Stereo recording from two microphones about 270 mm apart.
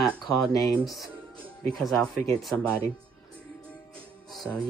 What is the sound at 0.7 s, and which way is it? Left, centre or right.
Speech, centre.